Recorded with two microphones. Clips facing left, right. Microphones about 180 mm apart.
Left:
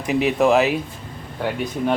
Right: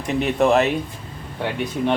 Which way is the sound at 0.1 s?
5° left (ahead or behind).